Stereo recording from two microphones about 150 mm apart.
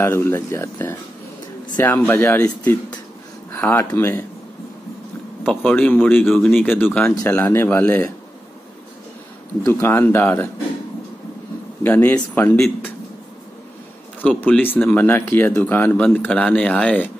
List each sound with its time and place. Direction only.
0.0 s speech: 15° left (ahead or behind)
5.4 s speech: 10° left (ahead or behind)
9.6 s speech: 15° left (ahead or behind)
11.8 s speech: 10° left (ahead or behind)
14.2 s speech: 10° left (ahead or behind)